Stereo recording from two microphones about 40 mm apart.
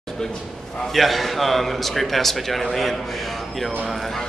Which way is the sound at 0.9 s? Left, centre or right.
Centre.